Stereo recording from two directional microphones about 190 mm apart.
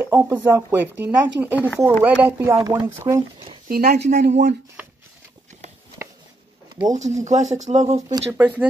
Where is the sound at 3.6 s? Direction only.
55° right (ahead or behind).